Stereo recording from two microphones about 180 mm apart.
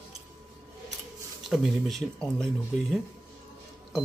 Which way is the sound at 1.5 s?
Centre (ahead or behind).